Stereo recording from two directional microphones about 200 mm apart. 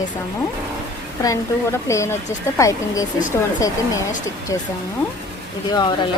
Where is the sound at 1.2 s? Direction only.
15° left (ahead or behind).